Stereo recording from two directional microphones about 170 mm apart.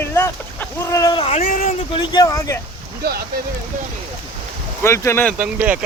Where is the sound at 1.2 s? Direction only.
35° left (ahead or behind).